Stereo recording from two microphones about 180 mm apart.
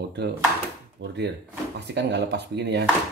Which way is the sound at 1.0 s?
90° right.